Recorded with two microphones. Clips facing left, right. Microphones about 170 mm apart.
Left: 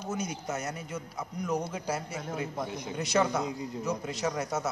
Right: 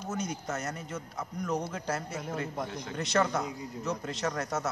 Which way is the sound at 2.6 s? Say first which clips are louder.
Left 1 dB; 15° left (ahead or behind).